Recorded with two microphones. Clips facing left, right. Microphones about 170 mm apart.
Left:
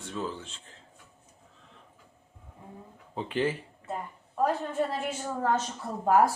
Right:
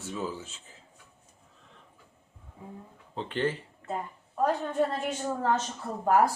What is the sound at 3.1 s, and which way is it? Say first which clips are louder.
Speech: left 1 dB; 10° left (ahead or behind).